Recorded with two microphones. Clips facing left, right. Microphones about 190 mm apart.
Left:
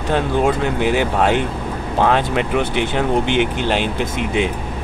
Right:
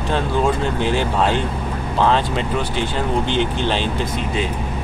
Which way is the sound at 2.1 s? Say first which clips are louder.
Left 2 dB; 65° left (ahead or behind).